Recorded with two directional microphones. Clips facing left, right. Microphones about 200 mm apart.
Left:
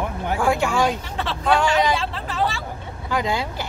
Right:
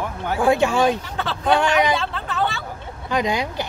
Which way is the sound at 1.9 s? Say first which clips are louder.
Right 1 dB; centre (ahead or behind).